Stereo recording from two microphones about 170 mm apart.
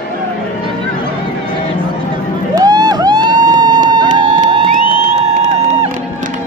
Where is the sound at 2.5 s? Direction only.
25° right (ahead or behind).